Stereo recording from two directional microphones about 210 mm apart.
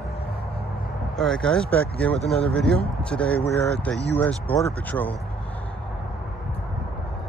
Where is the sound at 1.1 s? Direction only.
5° left (ahead or behind).